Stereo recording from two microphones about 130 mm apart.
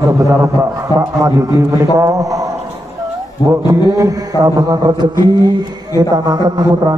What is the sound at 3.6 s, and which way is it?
Music, 25° right (ahead or behind).